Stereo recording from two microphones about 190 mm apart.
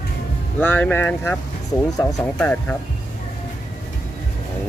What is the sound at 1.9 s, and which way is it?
Speech, 20° left (ahead or behind).